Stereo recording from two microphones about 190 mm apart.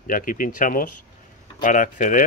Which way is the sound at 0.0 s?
45° left (ahead or behind).